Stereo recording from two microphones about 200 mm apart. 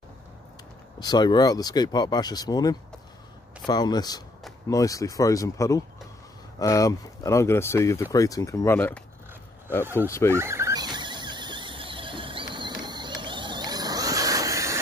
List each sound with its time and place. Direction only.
0.9 s speech: 20° left (ahead or behind)
10.0 s speech: 15° left (ahead or behind)
10.3 s a sound: 15° right (ahead or behind)